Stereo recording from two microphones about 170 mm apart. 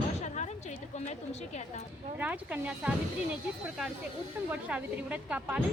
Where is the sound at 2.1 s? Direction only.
10° right (ahead or behind).